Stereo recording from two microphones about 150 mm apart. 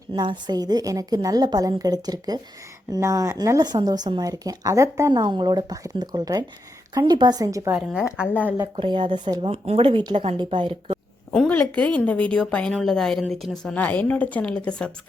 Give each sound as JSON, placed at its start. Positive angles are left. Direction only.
{"t": 0.1, "sound": "speech", "side_deg": -30}
{"t": 8.6, "sound": "speech", "side_deg": -35}
{"t": 11.3, "sound": "a woman's voice", "side_deg": 5}